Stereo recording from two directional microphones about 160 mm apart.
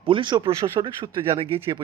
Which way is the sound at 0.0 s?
30° right (ahead or behind).